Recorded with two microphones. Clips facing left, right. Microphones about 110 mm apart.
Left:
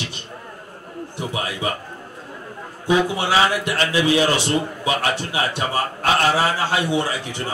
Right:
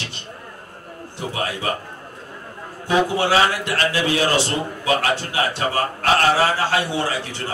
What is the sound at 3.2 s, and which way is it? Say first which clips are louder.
A man's voice: right 1 dB; 15° left (ahead or behind).